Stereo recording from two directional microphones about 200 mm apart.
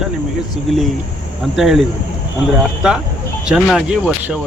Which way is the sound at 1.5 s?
Centre (ahead or behind).